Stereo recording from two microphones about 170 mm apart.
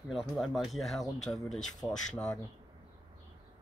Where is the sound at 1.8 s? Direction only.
15° left (ahead or behind).